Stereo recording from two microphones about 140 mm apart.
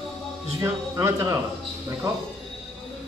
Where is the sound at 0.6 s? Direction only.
20° right (ahead or behind).